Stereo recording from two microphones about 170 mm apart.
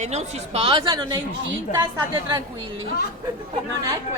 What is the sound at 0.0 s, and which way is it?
A woman's voice, 40° right (ahead or behind).